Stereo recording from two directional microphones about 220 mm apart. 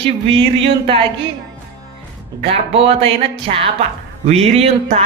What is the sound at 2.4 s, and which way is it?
Speech, 25° right (ahead or behind).